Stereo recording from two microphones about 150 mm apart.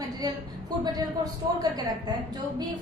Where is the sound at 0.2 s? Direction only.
25° right (ahead or behind).